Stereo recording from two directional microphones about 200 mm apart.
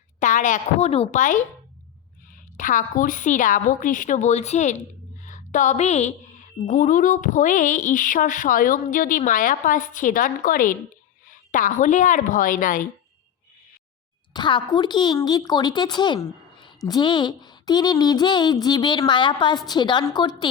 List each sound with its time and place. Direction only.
0.2 s a woman's voice: 40° left (ahead or behind)
14.3 s speech: 20° left (ahead or behind)